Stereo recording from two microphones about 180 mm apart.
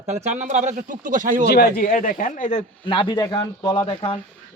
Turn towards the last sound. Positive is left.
turn(degrees=25)  # may be behind; listen again after turning